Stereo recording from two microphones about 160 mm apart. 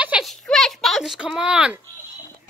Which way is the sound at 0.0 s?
5° right (ahead or behind).